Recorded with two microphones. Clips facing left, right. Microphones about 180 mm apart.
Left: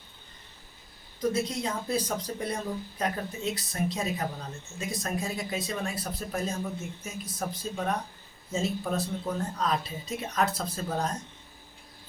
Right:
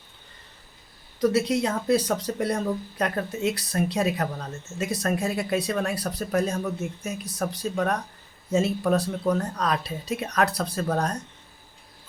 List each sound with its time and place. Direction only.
1.2 s speech: 75° right (ahead or behind)